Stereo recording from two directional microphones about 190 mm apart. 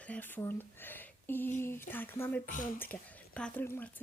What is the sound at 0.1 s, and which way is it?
A woman's voice, 10° left (ahead or behind).